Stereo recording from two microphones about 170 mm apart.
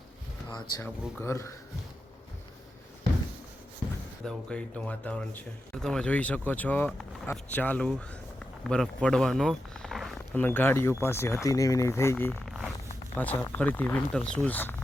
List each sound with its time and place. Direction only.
0.5 s speech: 20° left (ahead or behind)
4.3 s speech: 5° left (ahead or behind)
12.3 s zipper: centre (ahead or behind)
13.1 s speech: 10° left (ahead or behind)